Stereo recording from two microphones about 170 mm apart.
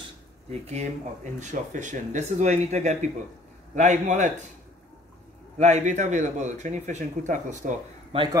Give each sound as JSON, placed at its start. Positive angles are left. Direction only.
{"t": 0.5, "sound": "speech", "side_deg": -40}
{"t": 5.6, "sound": "speech", "side_deg": -45}
{"t": 8.1, "sound": "speech", "side_deg": -30}